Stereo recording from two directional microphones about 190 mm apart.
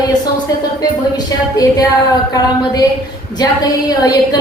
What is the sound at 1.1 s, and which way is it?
A woman's voice, 20° left (ahead or behind).